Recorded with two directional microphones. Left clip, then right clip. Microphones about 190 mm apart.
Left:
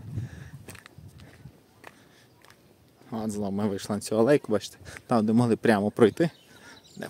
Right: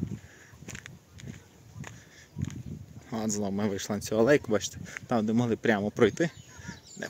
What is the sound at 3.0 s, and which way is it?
Speech, 10° left (ahead or behind).